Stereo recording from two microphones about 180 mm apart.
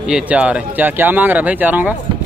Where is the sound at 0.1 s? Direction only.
5° right (ahead or behind).